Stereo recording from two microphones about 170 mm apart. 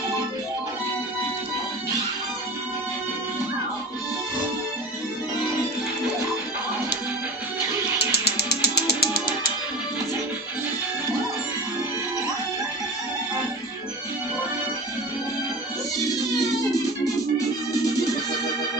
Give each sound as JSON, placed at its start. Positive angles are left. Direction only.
{"t": 8.2, "sound": "music", "side_deg": 70}